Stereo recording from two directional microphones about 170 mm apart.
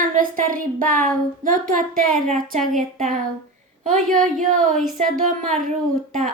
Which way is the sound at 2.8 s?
50° right (ahead or behind).